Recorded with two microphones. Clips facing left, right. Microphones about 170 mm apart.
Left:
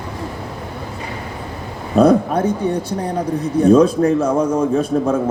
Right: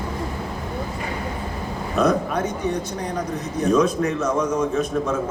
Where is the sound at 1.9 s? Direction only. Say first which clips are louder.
Left 8 dB; 30° left (ahead or behind).